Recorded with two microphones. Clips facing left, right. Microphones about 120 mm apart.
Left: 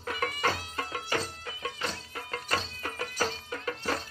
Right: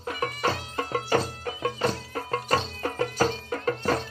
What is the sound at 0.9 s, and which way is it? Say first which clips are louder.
Music: right 9 dB; 35° right (ahead or behind).